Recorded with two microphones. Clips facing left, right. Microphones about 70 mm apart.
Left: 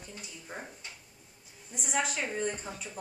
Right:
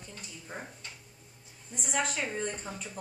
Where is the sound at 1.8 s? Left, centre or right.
Centre.